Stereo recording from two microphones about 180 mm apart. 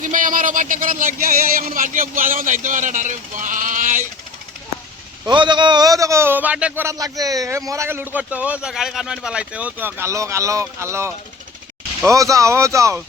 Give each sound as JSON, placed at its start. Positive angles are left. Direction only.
{"t": 0.0, "sound": "speech", "side_deg": -45}
{"t": 5.2, "sound": "a man's voice", "side_deg": -25}